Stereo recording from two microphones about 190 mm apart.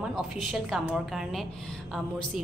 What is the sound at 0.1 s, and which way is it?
A woman's voice, centre (ahead or behind).